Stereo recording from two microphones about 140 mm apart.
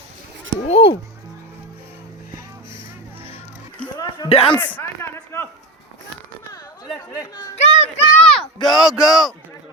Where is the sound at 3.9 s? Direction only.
30° left (ahead or behind).